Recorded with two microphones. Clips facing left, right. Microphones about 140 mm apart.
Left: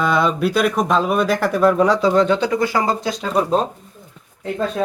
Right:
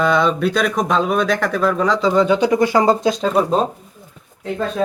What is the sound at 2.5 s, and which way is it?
Speech, 20° right (ahead or behind).